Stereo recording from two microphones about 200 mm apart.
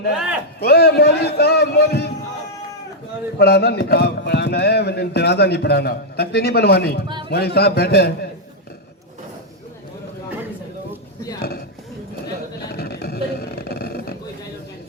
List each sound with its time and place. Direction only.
0.6 s a man's voice: 55° left (ahead or behind)
3.3 s speech: 55° left (ahead or behind)
12.7 s a sound: 50° left (ahead or behind)